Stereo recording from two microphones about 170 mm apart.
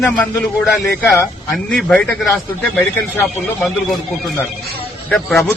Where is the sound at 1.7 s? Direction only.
5° left (ahead or behind).